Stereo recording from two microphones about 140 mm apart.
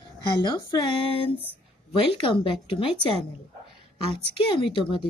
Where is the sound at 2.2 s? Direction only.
40° left (ahead or behind).